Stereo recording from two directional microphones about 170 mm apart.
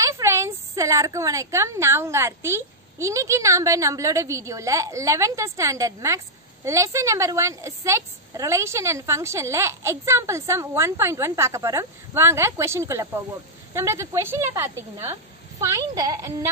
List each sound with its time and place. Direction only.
0.0 s a woman's voice: 15° right (ahead or behind)